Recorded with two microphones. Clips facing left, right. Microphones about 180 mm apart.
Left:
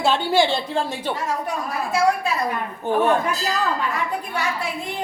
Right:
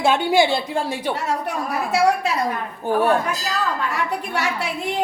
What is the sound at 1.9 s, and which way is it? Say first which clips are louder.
Speech: right 2 dB; 75° right (ahead or behind).